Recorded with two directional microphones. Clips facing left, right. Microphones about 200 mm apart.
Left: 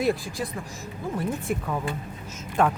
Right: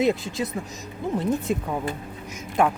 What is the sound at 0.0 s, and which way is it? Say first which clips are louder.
Speech: right 3 dB; 20° right (ahead or behind).